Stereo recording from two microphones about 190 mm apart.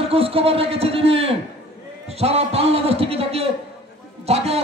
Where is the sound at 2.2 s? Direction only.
35° right (ahead or behind).